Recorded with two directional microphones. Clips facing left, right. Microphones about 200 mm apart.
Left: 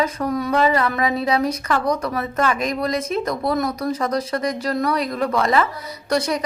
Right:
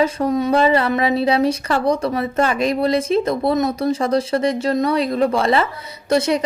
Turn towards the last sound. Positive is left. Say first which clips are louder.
# right 4 dB
turn(degrees=-25)  # may be behind; listen again after turning